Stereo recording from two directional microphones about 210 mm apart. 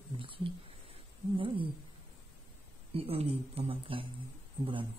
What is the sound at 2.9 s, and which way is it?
Speech, 30° right (ahead or behind).